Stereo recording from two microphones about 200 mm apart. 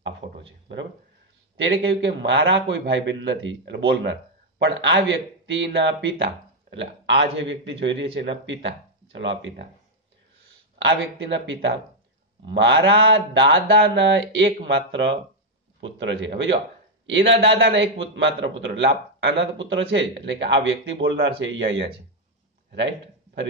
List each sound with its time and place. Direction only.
1.6 s speech: 50° right (ahead or behind)
2.0 s speech: 65° right (ahead or behind)
10.8 s speech: 70° right (ahead or behind)